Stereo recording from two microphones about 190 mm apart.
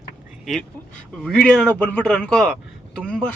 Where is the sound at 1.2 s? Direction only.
5° left (ahead or behind).